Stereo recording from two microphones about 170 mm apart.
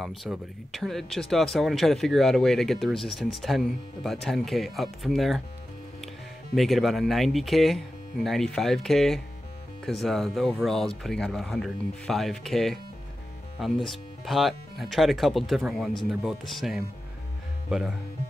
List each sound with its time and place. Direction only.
0.0 s speech: centre (ahead or behind)
6.5 s speech: centre (ahead or behind)